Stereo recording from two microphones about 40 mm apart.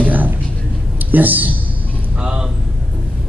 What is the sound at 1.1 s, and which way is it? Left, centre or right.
Speech, right.